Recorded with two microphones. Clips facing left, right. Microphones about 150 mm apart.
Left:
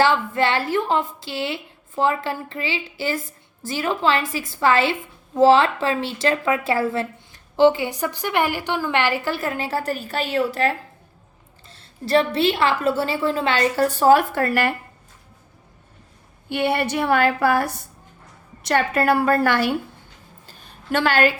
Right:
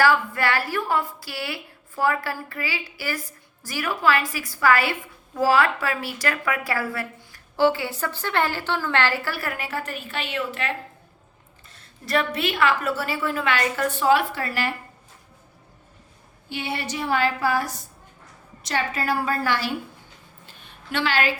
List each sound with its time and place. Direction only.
0.0 s a woman's voice: 25° left (ahead or behind); by 14.7 s 55° left (ahead or behind)
16.5 s a woman's voice: 60° left (ahead or behind)
20.5 s a sound: 40° left (ahead or behind)